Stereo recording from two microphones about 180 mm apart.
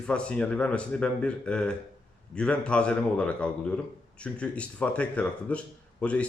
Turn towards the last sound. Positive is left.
turn(degrees=5)  # may be behind; listen again after turning